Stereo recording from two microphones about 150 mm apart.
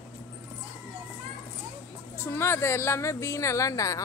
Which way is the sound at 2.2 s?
15° left (ahead or behind).